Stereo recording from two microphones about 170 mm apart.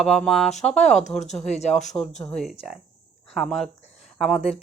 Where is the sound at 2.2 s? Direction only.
5° left (ahead or behind).